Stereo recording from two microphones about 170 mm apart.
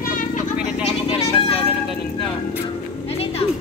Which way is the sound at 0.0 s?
50° left (ahead or behind).